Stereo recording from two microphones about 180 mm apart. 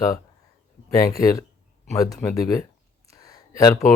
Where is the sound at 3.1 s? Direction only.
20° left (ahead or behind).